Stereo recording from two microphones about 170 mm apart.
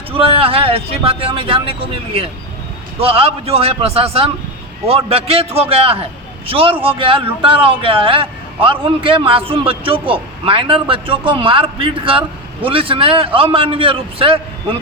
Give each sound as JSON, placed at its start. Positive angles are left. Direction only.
{"t": 0.1, "sound": "a man's voice", "side_deg": -30}